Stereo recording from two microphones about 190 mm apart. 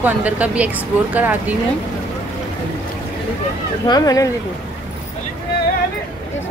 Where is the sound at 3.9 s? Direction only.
20° left (ahead or behind).